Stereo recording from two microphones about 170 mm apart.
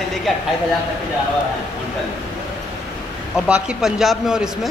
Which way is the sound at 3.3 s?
5° right (ahead or behind).